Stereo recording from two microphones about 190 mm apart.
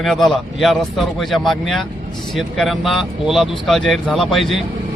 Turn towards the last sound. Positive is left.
turn(degrees=0)  # may be behind; listen again after turning